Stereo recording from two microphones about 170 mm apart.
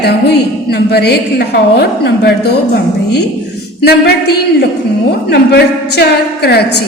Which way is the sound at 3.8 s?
70° left (ahead or behind).